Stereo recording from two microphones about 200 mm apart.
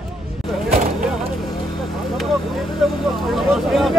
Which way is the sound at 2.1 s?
Centre (ahead or behind).